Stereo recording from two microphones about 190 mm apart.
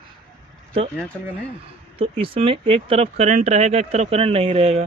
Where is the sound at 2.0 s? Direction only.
30° right (ahead or behind).